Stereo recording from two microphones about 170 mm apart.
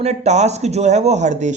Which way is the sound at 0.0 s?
40° right (ahead or behind).